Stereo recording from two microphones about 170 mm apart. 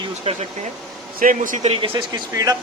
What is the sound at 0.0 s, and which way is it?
Speech, 40° right (ahead or behind).